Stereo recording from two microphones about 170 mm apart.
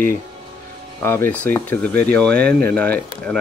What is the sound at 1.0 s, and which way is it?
Speech, 15° left (ahead or behind).